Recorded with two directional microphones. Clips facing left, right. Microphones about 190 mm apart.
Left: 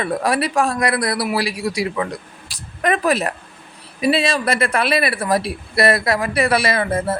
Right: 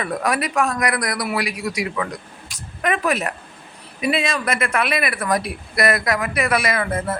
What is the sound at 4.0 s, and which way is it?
Speech, 30° left (ahead or behind).